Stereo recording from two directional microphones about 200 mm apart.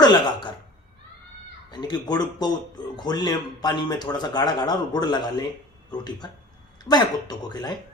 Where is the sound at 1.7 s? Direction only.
20° left (ahead or behind).